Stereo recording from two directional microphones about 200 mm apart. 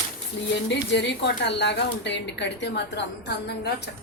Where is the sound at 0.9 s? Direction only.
60° left (ahead or behind).